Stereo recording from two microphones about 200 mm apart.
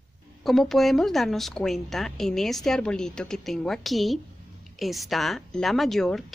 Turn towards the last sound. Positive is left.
turn(degrees=0)  # may be behind; listen again after turning